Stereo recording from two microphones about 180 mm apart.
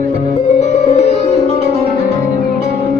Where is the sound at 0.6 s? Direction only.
35° left (ahead or behind).